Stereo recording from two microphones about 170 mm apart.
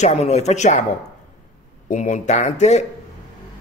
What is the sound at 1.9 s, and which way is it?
Speech, 45° left (ahead or behind).